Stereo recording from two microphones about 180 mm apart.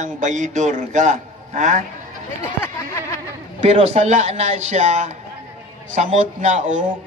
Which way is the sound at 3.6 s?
35° right (ahead or behind).